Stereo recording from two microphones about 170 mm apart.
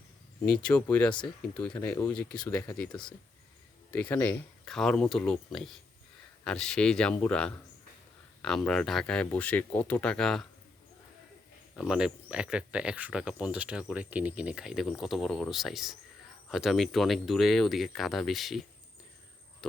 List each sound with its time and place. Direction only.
0.6 s speech: 10° left (ahead or behind)
3.9 s speech: 10° left (ahead or behind)
11.8 s speech: 5° right (ahead or behind)